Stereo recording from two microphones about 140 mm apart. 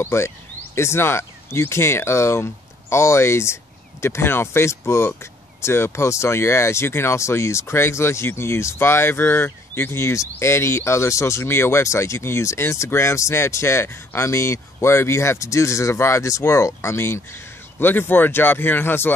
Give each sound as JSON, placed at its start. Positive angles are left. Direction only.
{"t": 0.0, "sound": "speech", "side_deg": 20}